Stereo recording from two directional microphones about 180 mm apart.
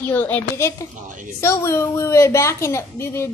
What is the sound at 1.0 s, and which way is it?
Speech, 45° right (ahead or behind).